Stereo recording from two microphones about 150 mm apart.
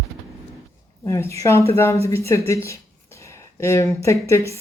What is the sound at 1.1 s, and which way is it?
A woman's voice, 15° left (ahead or behind).